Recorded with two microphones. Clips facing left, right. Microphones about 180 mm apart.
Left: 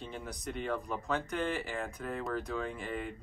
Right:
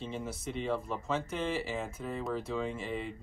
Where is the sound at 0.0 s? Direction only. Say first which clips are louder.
Right 3 dB; centre (ahead or behind).